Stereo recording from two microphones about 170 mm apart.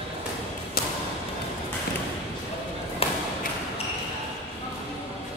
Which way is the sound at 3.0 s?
35° left (ahead or behind).